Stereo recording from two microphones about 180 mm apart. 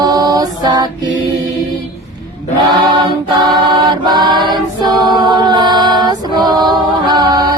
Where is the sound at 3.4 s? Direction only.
25° right (ahead or behind).